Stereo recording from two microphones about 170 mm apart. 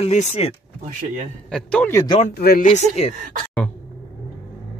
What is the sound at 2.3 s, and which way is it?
Speech, 60° left (ahead or behind).